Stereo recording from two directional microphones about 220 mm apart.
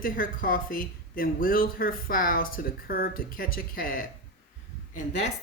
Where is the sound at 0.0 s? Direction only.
40° left (ahead or behind).